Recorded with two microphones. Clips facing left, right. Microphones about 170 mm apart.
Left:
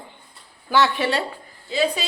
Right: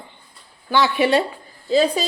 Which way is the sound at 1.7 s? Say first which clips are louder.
Right 5 dB; 40° right (ahead or behind).